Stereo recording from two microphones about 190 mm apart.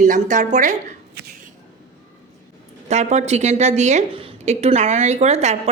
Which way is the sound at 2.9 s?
35° right (ahead or behind).